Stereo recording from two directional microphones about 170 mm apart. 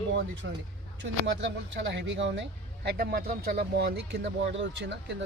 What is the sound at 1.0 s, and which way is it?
Speech, 90° right.